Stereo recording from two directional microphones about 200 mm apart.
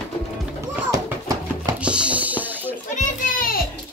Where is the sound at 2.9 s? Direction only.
45° left (ahead or behind).